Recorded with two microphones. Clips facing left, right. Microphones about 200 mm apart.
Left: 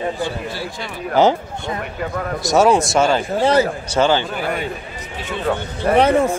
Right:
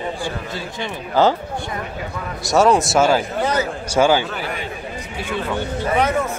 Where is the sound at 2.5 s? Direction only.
Centre (ahead or behind).